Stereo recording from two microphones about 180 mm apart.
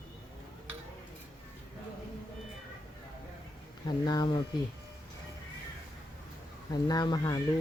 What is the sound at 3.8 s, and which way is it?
Speech, 20° left (ahead or behind).